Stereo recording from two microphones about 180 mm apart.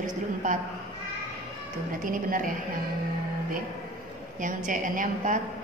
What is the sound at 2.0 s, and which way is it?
Speech, 50° right (ahead or behind).